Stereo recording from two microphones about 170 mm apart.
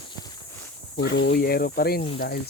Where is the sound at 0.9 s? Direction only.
80° left.